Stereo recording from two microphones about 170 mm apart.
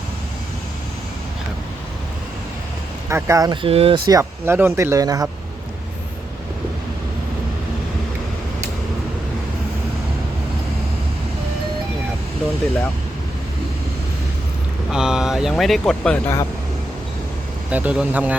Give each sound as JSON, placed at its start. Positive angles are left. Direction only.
{"t": 3.1, "sound": "speech", "side_deg": -15}
{"t": 14.8, "sound": "speech", "side_deg": -5}
{"t": 17.7, "sound": "speech", "side_deg": -10}